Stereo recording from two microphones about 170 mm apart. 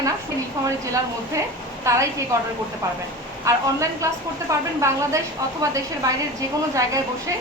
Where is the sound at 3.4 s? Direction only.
20° right (ahead or behind).